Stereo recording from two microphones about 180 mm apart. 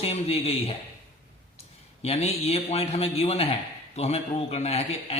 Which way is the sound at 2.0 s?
35° left (ahead or behind).